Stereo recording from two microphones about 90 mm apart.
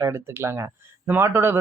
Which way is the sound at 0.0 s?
30° right (ahead or behind).